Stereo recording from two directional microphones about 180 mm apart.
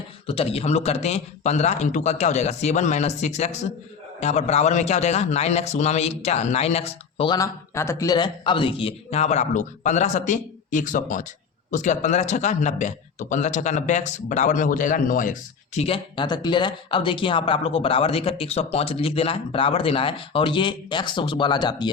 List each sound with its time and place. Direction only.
0.3 s a man's voice: 30° left (ahead or behind)
7.3 s a man's voice: 15° left (ahead or behind)